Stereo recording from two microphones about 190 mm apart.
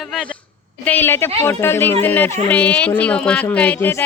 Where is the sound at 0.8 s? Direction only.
10° left (ahead or behind).